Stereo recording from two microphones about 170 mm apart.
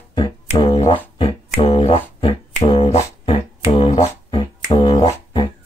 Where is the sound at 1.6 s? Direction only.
35° left (ahead or behind).